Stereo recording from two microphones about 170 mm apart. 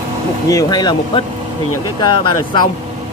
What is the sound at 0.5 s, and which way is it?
Speech, 25° left (ahead or behind).